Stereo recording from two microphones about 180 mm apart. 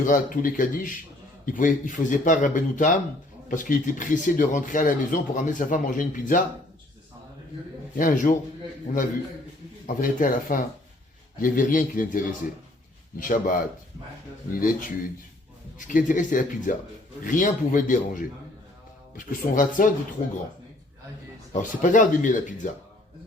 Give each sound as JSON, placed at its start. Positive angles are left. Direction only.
{"t": 0.0, "sound": "speech", "side_deg": 45}
{"t": 7.9, "sound": "speech", "side_deg": 45}
{"t": 9.8, "sound": "speech", "side_deg": 50}
{"t": 14.6, "sound": "speech", "side_deg": 50}
{"t": 21.5, "sound": "speech", "side_deg": 45}